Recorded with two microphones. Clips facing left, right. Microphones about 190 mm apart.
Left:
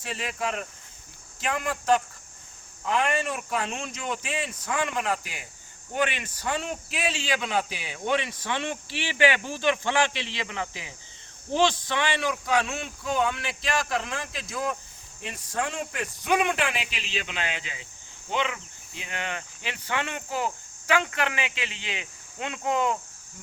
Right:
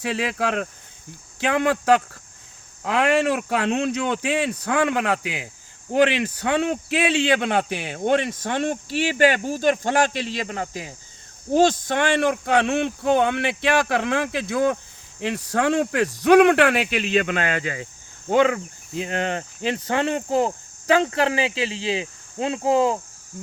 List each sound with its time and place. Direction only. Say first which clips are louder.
0.0 s speech: right 7 dB; 70° right (ahead or behind)
5.9 s a man's voice: right 10 dB; 80° right; by 23.0 s 30° right (ahead or behind)